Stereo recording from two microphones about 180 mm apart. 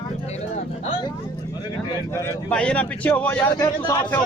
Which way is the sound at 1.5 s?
20° left (ahead or behind).